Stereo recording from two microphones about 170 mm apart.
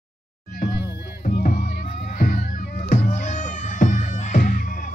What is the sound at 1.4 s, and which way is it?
Music, 50° left (ahead or behind).